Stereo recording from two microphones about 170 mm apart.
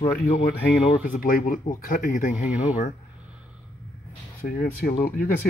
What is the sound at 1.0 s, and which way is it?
Speech, 55° left (ahead or behind).